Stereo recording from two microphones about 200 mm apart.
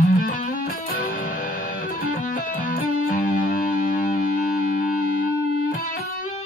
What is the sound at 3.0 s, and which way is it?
Music, 40° left (ahead or behind).